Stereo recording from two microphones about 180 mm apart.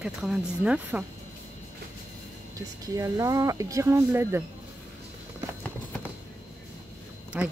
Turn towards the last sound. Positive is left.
turn(degrees=-5)  # may be behind; listen again after turning